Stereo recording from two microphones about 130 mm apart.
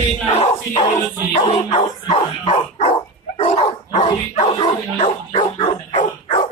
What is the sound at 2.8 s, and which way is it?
Dog, 55° left (ahead or behind).